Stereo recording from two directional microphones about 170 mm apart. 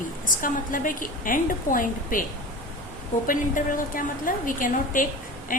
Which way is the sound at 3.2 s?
55° left (ahead or behind).